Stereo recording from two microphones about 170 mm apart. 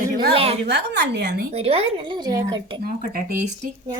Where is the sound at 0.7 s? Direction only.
75° right (ahead or behind).